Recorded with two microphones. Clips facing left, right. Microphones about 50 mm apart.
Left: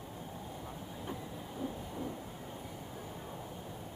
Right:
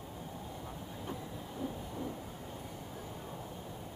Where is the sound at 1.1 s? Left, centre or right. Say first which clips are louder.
Even; centre.